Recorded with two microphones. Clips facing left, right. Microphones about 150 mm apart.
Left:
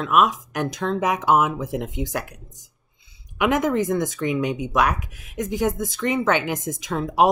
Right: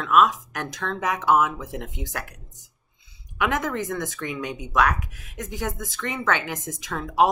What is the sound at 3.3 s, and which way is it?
A woman's voice, 15° left (ahead or behind).